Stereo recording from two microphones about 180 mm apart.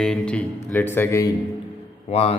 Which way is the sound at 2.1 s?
35° left (ahead or behind).